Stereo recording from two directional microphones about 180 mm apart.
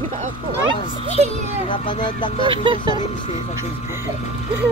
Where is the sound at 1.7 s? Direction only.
25° left (ahead or behind).